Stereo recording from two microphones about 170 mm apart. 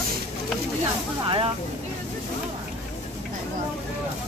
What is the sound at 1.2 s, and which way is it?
Speech, 30° right (ahead or behind).